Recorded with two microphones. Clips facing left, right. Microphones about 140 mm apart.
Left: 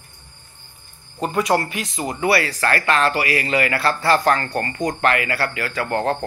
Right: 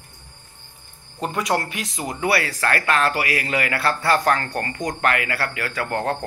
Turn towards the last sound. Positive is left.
turn(degrees=0)  # may be behind; listen again after turning